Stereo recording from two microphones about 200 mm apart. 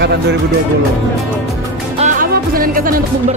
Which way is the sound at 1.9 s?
40° right (ahead or behind).